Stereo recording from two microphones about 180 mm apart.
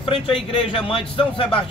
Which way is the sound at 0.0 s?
30° left (ahead or behind).